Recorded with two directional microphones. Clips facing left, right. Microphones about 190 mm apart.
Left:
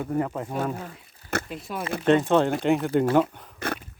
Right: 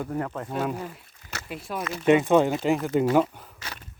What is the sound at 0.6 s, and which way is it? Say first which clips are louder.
Speech: even; 5° right (ahead or behind).